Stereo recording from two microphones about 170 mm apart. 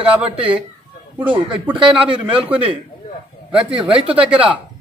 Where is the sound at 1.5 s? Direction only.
5° right (ahead or behind).